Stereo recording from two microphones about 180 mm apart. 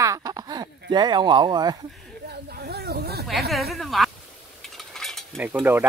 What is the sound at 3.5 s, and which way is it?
Speech, centre (ahead or behind).